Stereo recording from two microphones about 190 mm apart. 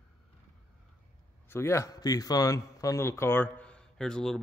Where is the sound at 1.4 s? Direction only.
15° left (ahead or behind).